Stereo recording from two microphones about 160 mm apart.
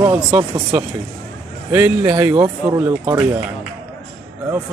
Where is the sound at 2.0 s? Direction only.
25° right (ahead or behind).